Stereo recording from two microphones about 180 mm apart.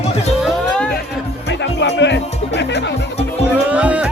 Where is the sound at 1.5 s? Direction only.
75° left (ahead or behind).